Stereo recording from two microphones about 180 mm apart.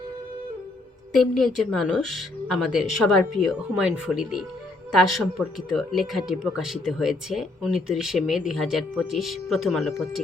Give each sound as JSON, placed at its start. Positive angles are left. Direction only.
{"t": 1.2, "sound": "speech", "side_deg": 0}